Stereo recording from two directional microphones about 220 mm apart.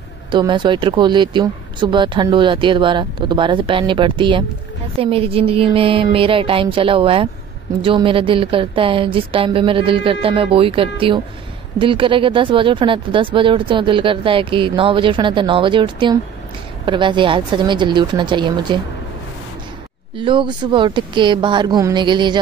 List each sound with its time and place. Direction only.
0.3 s speech: 20° right (ahead or behind)
20.2 s speech: 20° right (ahead or behind)